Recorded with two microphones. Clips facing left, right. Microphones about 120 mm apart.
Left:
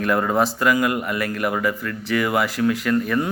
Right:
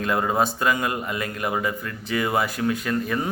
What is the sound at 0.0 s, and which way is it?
A man's voice, 25° right (ahead or behind).